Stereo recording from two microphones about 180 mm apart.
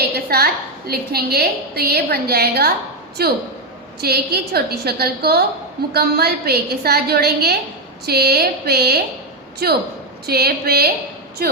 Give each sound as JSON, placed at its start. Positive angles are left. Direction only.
{"t": 0.3, "sound": "a woman's voice", "side_deg": -60}